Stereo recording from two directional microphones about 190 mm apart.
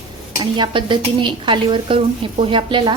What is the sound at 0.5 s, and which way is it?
A woman's voice, 25° right (ahead or behind).